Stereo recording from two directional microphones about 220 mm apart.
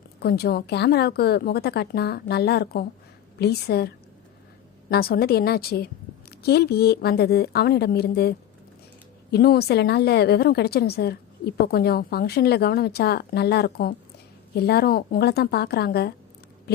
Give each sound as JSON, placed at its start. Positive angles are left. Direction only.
{"t": 0.2, "sound": "a woman's voice", "side_deg": 45}